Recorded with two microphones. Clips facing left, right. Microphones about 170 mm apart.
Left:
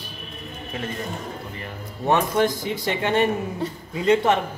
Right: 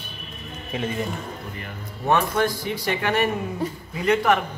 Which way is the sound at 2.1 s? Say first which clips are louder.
Left 1 dB; 20° left (ahead or behind).